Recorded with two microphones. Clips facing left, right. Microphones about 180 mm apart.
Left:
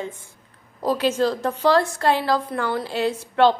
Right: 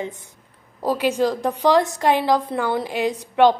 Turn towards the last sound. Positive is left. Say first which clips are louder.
# right 2 dB
turn(degrees=-15)  # may be behind; listen again after turning